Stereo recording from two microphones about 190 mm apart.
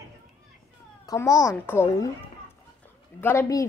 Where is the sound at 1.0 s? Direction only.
15° left (ahead or behind).